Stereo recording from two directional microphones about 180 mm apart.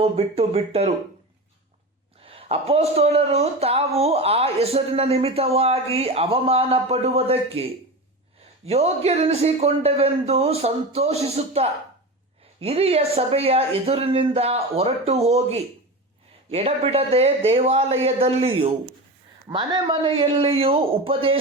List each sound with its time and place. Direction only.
0.0 s speech: 35° right (ahead or behind)
2.2 s speech: 30° right (ahead or behind)